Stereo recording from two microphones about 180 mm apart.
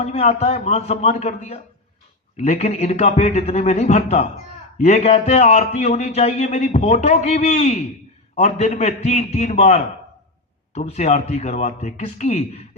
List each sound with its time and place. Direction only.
0.0 s a man's voice: 35° left (ahead or behind)